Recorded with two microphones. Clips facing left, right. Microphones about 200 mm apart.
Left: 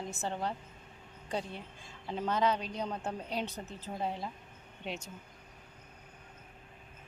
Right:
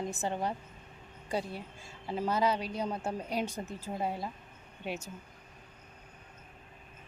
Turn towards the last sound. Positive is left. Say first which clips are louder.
# right 2 dB
turn(degrees=-5)  # may be behind; listen again after turning